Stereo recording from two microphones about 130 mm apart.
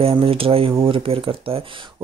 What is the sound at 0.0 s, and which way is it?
Speech, 45° right (ahead or behind).